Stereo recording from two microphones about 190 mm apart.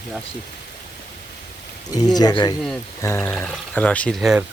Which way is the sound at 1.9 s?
20° left (ahead or behind).